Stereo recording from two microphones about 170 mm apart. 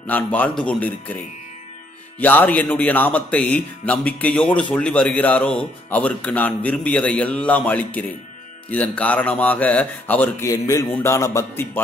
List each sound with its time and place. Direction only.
0.0 s speech: 10° left (ahead or behind)
2.1 s speech: 10° left (ahead or behind)